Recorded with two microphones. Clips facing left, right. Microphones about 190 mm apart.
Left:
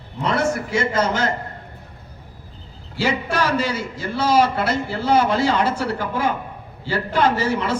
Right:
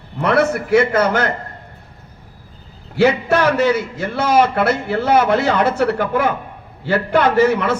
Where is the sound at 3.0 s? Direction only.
60° right (ahead or behind).